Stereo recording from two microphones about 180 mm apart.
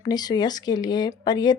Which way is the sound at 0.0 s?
20° left (ahead or behind).